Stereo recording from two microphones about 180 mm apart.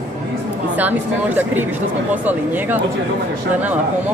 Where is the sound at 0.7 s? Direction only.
10° right (ahead or behind).